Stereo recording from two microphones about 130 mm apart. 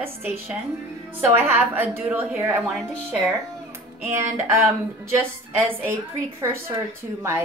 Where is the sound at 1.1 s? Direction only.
15° right (ahead or behind).